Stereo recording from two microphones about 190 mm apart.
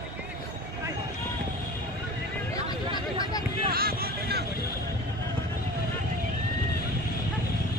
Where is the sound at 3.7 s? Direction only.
50° right (ahead or behind).